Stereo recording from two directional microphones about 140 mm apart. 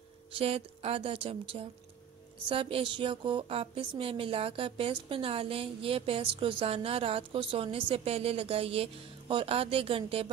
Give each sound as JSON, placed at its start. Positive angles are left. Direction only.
{"t": 0.3, "sound": "a woman's voice", "side_deg": -45}